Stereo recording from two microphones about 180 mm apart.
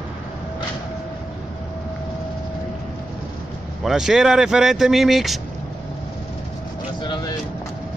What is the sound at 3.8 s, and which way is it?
Speech, 5° right (ahead or behind).